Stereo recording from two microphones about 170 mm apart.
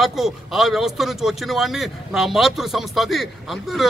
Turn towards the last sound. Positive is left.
turn(degrees=0)  # may be behind; listen again after turning